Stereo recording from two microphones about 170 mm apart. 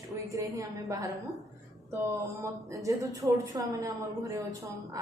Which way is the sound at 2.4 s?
20° right (ahead or behind).